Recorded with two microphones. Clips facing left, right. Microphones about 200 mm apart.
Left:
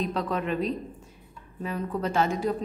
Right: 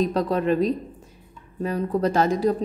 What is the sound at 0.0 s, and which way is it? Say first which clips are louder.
A woman's voice: right 6 dB; 40° right (ahead or behind).